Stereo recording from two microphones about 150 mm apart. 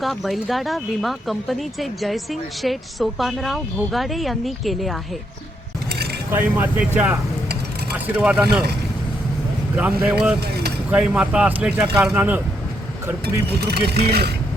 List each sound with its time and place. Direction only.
0.0 s speech: centre (ahead or behind)
6.3 s speech: 15° right (ahead or behind)
9.7 s speech: 10° right (ahead or behind)
13.6 s speech: 90° right